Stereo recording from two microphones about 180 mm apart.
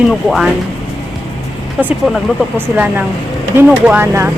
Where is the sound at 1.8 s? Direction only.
5° right (ahead or behind).